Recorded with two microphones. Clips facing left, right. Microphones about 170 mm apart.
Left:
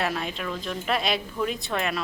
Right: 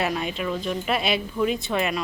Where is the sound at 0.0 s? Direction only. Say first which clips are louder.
Right 3 dB; centre (ahead or behind).